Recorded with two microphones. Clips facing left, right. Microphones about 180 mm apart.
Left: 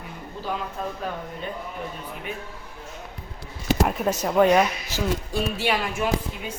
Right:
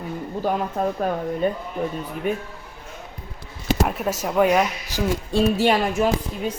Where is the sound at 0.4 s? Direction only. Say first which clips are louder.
Right 7 dB; 50° right (ahead or behind).